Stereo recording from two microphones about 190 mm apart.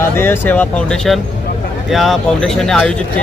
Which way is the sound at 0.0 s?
10° left (ahead or behind).